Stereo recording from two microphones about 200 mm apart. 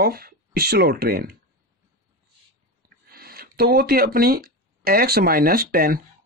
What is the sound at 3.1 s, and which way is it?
Speech, 50° right (ahead or behind).